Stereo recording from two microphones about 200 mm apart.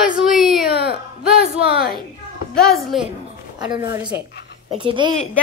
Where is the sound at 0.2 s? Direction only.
Centre (ahead or behind).